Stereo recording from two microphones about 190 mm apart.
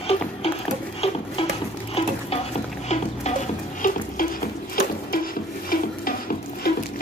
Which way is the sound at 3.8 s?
45° left (ahead or behind).